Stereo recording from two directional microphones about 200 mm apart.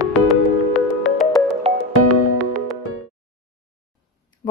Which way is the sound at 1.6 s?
30° right (ahead or behind).